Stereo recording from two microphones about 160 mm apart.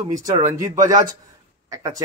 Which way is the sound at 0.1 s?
20° right (ahead or behind).